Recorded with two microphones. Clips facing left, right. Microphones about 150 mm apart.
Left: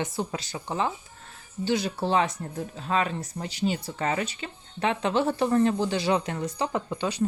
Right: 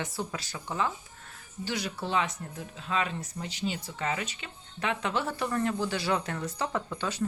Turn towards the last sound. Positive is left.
turn(degrees=20)  # may be behind; listen again after turning